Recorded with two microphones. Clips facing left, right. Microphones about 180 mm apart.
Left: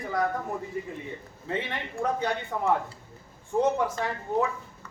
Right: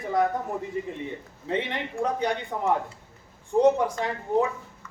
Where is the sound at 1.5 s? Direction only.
15° right (ahead or behind).